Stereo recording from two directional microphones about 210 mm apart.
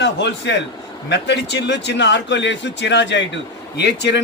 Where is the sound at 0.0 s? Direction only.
55° left (ahead or behind).